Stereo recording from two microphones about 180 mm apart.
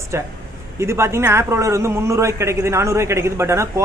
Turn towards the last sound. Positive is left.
turn(degrees=-15)  # may be behind; listen again after turning